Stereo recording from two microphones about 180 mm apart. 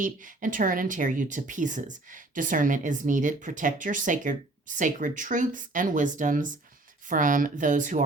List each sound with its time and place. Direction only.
0.0 s speech: 50° right (ahead or behind)